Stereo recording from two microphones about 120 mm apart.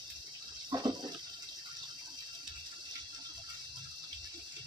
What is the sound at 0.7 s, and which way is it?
Water, 35° right (ahead or behind).